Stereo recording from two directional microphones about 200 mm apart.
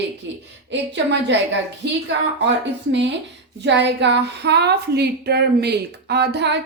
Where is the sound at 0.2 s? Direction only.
60° right (ahead or behind).